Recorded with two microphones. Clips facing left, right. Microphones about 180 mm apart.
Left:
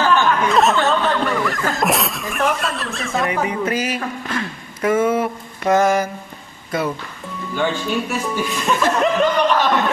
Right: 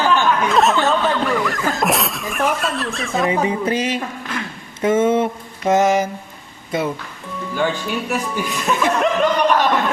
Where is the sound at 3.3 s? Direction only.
25° right (ahead or behind).